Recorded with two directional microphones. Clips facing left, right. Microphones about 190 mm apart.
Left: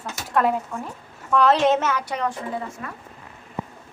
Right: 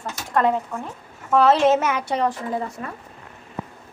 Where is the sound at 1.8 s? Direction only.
15° right (ahead or behind).